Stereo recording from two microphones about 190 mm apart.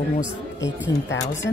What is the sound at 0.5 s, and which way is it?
Speech, 70° left (ahead or behind).